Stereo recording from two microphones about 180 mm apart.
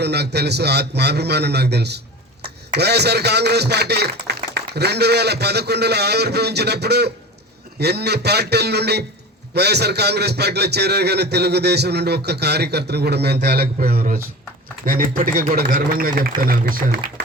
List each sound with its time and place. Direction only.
0.0 s a man's voice: 65° right (ahead or behind)